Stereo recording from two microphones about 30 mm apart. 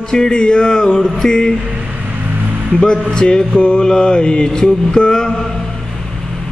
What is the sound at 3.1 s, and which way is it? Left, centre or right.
Music, left.